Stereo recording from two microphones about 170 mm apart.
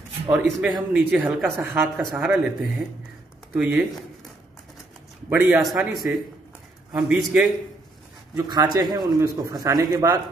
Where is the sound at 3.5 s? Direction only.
5° right (ahead or behind).